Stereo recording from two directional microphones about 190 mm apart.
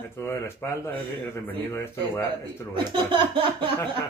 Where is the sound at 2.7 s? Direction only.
25° right (ahead or behind).